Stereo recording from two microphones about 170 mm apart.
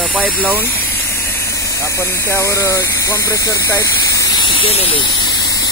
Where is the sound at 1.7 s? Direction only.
15° left (ahead or behind).